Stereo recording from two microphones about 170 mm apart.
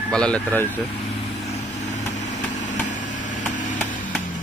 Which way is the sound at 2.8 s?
45° left (ahead or behind).